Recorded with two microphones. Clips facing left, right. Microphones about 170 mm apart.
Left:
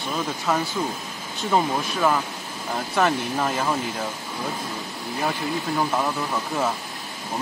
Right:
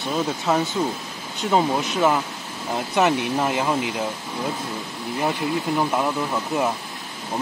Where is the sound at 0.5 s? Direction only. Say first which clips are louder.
Right 2 dB; 25° right (ahead or behind).